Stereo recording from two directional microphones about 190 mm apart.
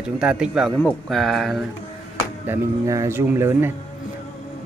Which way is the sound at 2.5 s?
15° right (ahead or behind).